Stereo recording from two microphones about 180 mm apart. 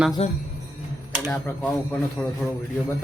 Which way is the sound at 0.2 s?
35° left (ahead or behind).